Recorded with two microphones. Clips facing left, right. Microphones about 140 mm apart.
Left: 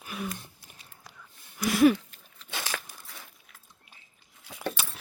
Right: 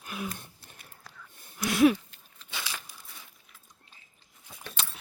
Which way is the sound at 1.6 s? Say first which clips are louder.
Left 1 dB; centre (ahead or behind).